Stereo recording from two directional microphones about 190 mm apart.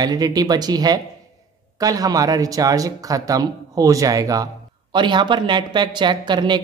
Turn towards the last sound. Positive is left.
turn(degrees=-25)  # may be behind; listen again after turning